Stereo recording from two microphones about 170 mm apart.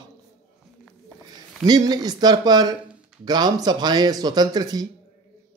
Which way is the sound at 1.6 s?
25° right (ahead or behind).